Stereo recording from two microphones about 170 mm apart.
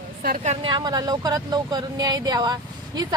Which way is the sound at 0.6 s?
25° right (ahead or behind).